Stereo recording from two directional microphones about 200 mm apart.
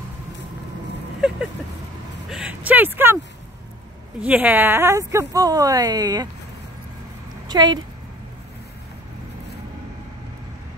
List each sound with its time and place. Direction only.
2.2 s vehicle: 5° right (ahead or behind)
4.2 s a woman's voice: 5° right (ahead or behind)
7.4 s speech: 20° right (ahead or behind)